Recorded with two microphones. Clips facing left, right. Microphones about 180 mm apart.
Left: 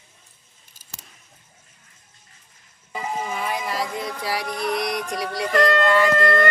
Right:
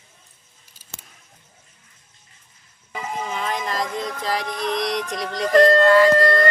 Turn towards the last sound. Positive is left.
turn(degrees=-35)  # may be behind; listen again after turning